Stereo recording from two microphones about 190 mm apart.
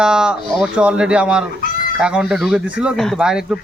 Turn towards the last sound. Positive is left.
turn(degrees=-5)  # may be behind; listen again after turning